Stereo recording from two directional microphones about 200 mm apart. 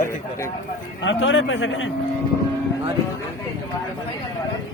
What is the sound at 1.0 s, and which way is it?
Speech, 70° left (ahead or behind).